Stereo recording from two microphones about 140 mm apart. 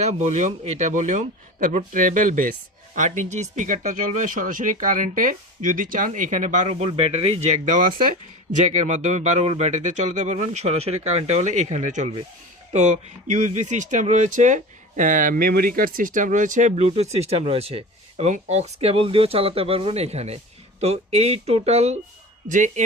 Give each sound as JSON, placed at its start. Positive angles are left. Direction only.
{"t": 0.0, "sound": "speech", "side_deg": -55}
{"t": 8.5, "sound": "speech", "side_deg": -60}
{"t": 22.4, "sound": "speech", "side_deg": -65}